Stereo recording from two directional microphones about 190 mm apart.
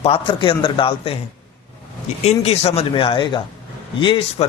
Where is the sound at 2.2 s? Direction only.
35° left (ahead or behind).